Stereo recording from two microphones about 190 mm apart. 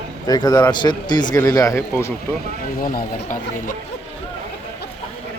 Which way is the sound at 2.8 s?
45° left (ahead or behind).